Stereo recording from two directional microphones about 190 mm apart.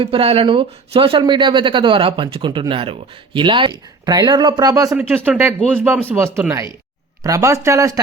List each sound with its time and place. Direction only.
0.0 s speech: 30° right (ahead or behind)
4.9 s speech: 10° right (ahead or behind)